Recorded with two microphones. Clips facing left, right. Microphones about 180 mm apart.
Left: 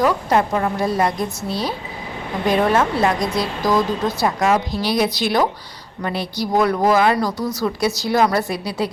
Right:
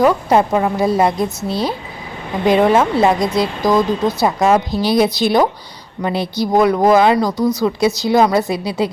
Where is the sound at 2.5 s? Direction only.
25° right (ahead or behind).